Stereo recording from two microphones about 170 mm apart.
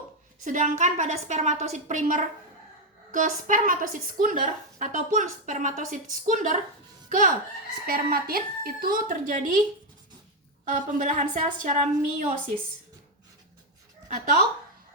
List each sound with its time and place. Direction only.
0.4 s a woman's voice: 45° right (ahead or behind)
10.7 s a woman's voice: 50° right (ahead or behind)